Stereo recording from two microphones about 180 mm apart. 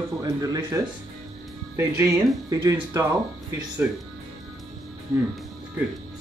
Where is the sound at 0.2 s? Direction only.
20° right (ahead or behind).